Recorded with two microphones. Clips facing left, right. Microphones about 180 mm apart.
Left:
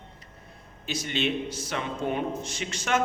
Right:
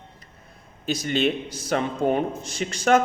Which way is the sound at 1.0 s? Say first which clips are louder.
Right 4 dB; 40° right (ahead or behind).